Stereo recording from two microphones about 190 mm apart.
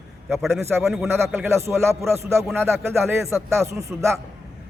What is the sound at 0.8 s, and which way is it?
Speech, centre (ahead or behind).